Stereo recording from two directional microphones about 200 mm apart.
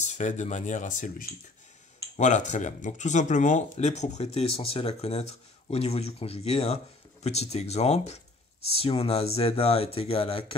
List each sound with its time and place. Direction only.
0.0 s speech: 35° left (ahead or behind)